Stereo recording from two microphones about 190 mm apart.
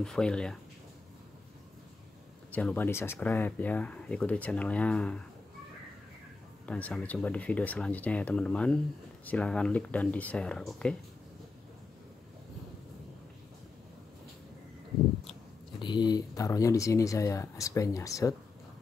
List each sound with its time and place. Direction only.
0.0 s speech: 5° left (ahead or behind)
2.5 s speech: 10° left (ahead or behind)
6.6 s speech: 5° left (ahead or behind)
15.8 s speech: 25° left (ahead or behind)